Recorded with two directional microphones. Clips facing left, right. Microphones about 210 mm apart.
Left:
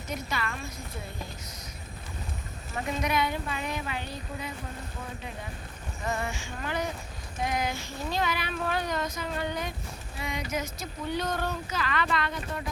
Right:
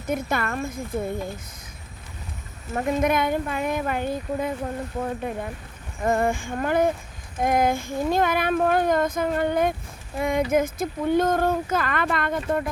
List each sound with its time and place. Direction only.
0.1 s speech: 55° right (ahead or behind)
2.7 s speech: 50° right (ahead or behind)